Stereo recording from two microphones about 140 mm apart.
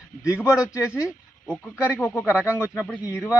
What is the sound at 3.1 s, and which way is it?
Speech, 20° left (ahead or behind).